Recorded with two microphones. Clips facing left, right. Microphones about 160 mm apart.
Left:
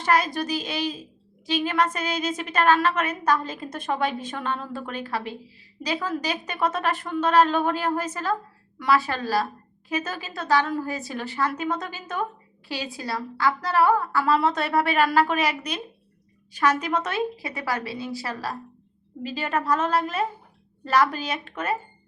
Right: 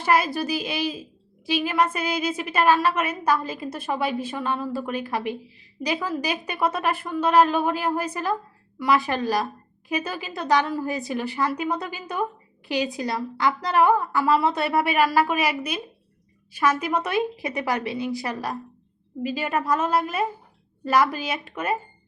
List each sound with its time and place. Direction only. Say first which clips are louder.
0.0 s a woman's voice: right 1 dB; 10° right (ahead or behind)